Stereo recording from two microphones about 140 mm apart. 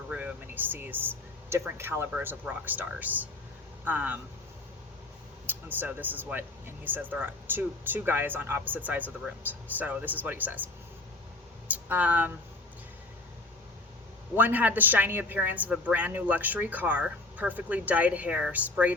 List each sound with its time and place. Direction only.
0.1 s a woman's voice: 10° right (ahead or behind)
5.5 s a woman's voice: 15° right (ahead or behind)
11.7 s speech: 10° right (ahead or behind)
14.3 s a woman's voice: 10° right (ahead or behind)